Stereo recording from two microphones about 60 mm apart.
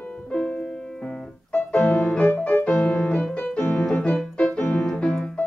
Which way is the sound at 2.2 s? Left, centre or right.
Left.